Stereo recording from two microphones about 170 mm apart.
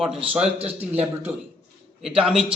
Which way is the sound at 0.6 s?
35° right (ahead or behind).